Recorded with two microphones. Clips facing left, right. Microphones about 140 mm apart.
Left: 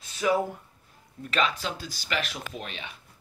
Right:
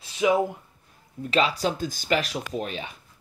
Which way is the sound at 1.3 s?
35° right (ahead or behind).